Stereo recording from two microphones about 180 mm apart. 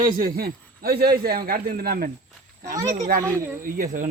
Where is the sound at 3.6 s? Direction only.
50° right (ahead or behind).